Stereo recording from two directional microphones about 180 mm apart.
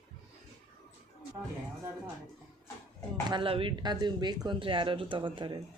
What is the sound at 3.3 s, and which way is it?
Speech, 30° right (ahead or behind).